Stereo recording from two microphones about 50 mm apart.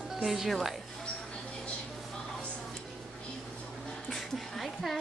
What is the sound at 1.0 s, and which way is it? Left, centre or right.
Music, centre.